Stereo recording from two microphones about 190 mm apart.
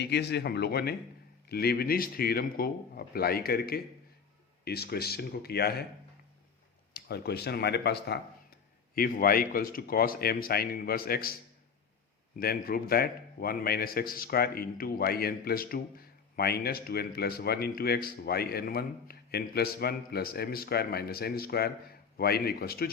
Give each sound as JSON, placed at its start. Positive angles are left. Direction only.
{"t": 0.0, "sound": "a man's voice", "side_deg": 65}
{"t": 6.9, "sound": "a man's voice", "side_deg": 60}
{"t": 12.4, "sound": "a man's voice", "side_deg": 50}